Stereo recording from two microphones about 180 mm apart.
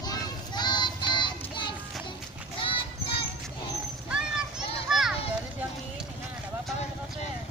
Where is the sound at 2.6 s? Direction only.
30° left (ahead or behind).